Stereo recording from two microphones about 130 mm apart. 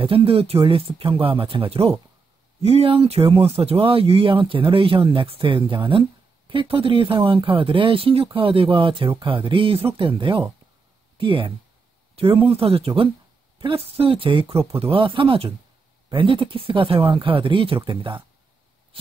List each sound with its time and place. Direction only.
0.0 s speech: 45° right (ahead or behind)